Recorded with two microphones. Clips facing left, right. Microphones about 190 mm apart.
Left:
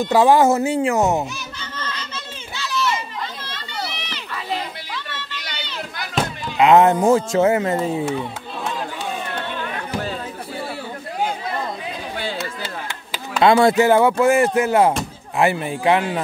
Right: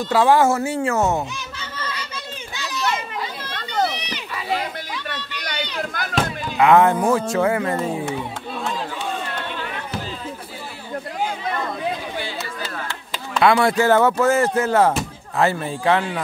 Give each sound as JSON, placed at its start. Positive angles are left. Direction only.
{"t": 0.0, "sound": "speech", "side_deg": 15}
{"t": 1.6, "sound": "a sound", "side_deg": -10}
{"t": 2.5, "sound": "children playing", "side_deg": -15}
{"t": 3.9, "sound": "run", "side_deg": -15}
{"t": 6.6, "sound": "speech", "side_deg": 20}
{"t": 12.8, "sound": "chop", "side_deg": 5}
{"t": 13.4, "sound": "speech", "side_deg": 25}